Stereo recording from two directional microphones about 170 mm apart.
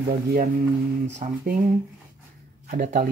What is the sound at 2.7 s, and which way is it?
Speech, 50° right (ahead or behind).